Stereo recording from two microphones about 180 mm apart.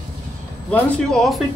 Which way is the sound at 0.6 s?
5° left (ahead or behind).